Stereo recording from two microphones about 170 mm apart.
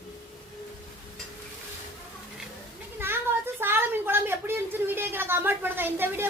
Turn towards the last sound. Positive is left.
turn(degrees=-10)  # may be behind; listen again after turning